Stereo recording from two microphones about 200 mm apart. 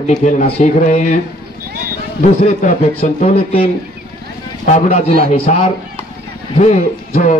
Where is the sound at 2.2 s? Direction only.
35° left (ahead or behind).